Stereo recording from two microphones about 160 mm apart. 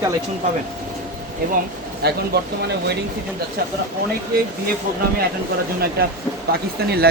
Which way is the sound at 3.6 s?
75° right (ahead or behind).